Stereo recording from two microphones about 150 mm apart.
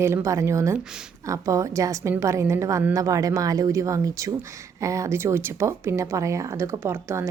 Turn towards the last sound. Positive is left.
turn(degrees=-15)  # may be behind; listen again after turning